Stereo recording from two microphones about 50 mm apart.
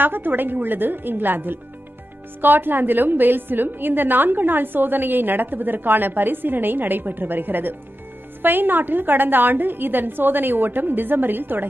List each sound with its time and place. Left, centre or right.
0.0 s a woman's voice: right